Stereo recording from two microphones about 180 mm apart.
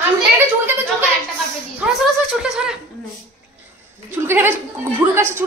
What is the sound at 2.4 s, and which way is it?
Speech, 5° right (ahead or behind).